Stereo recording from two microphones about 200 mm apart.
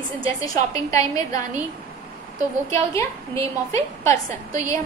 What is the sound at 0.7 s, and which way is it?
Speech, 15° left (ahead or behind).